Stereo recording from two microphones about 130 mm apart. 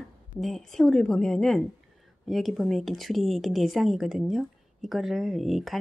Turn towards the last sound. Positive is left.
turn(degrees=0)  # may be behind; listen again after turning